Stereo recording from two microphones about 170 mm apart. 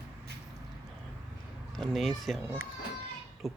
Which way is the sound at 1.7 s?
Centre (ahead or behind).